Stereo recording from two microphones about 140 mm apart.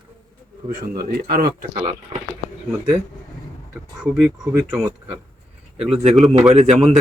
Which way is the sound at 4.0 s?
5° right (ahead or behind).